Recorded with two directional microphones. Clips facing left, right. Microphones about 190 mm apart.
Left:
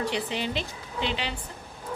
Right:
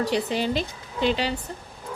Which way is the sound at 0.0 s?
40° right (ahead or behind).